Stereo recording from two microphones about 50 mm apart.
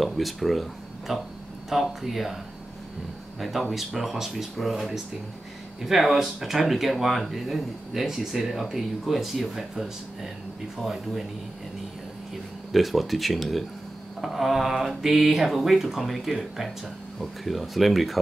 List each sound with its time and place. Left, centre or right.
0.0 s speech: centre
3.3 s speech: centre
12.7 s speech: centre